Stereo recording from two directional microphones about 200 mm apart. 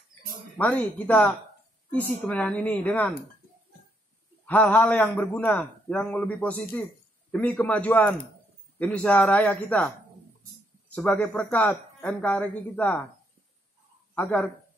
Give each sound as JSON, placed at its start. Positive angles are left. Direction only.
{"t": 0.6, "sound": "a man's voice", "side_deg": 5}
{"t": 4.5, "sound": "a man's voice", "side_deg": 10}
{"t": 14.1, "sound": "a man's voice", "side_deg": 10}